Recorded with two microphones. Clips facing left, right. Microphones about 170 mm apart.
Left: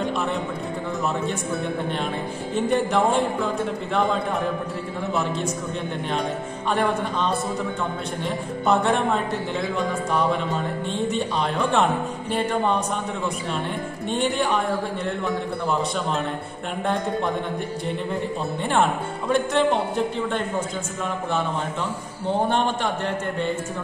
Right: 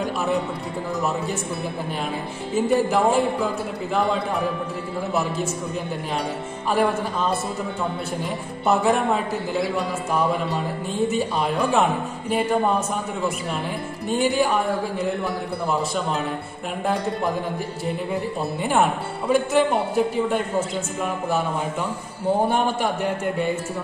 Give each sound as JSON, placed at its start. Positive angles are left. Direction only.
{"t": 2.5, "sound": "a man's voice", "side_deg": -5}
{"t": 6.7, "sound": "a man's voice", "side_deg": -5}
{"t": 8.6, "sound": "a man's voice", "side_deg": -5}
{"t": 14.0, "sound": "a man's voice", "side_deg": -5}
{"t": 18.6, "sound": "a man's voice", "side_deg": -5}
{"t": 22.5, "sound": "a man's voice", "side_deg": -10}